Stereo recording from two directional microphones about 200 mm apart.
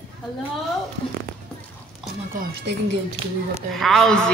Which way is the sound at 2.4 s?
40° right (ahead or behind).